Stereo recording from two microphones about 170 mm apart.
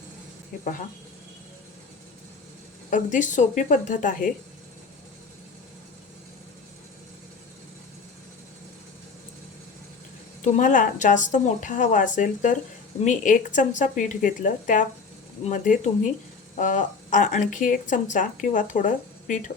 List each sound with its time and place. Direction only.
2.9 s speech: 45° left (ahead or behind)
10.4 s speech: 45° left (ahead or behind)